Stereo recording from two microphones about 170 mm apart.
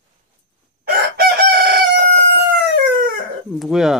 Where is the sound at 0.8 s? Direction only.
65° right (ahead or behind).